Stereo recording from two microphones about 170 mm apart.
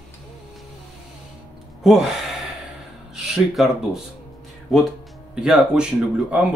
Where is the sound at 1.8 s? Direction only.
Centre (ahead or behind).